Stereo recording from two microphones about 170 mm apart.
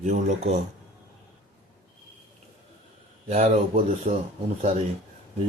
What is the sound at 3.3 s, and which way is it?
Speech, 40° right (ahead or behind).